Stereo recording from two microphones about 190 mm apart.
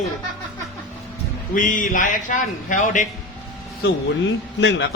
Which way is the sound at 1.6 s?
45° left (ahead or behind).